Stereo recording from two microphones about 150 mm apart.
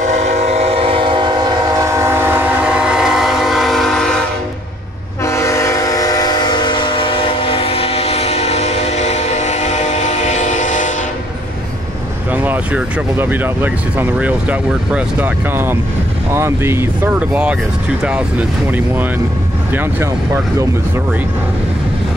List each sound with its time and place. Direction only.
0.0 s train: 50° right (ahead or behind); by 4.2 s 5° left (ahead or behind)
5.2 s train: 20° left (ahead or behind); by 10.9 s 55° left (ahead or behind)
12.3 s speech: 10° right (ahead or behind)
19.7 s speech: 15° right (ahead or behind)